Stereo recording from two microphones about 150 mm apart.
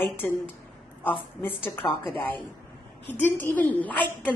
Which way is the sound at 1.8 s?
25° left (ahead or behind).